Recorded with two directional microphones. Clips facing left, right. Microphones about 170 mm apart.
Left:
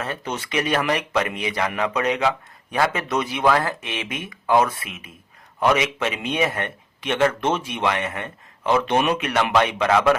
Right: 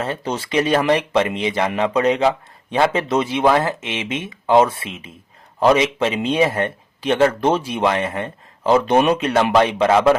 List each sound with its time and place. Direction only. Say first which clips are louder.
0.0 s a man's voice: right 5 dB; 30° right (ahead or behind)